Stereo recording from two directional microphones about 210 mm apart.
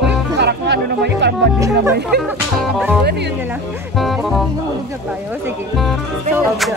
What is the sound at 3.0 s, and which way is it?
Speech, 55° right (ahead or behind).